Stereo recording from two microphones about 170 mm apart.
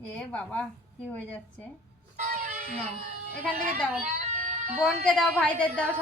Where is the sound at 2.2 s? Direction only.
45° right (ahead or behind).